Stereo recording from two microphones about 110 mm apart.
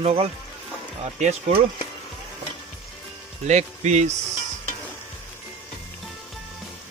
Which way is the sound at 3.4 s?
90° right.